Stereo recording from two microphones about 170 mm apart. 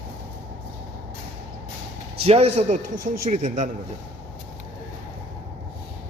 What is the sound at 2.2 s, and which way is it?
A man's voice, 35° right (ahead or behind).